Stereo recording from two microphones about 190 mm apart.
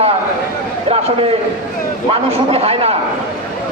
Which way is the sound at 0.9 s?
30° right (ahead or behind).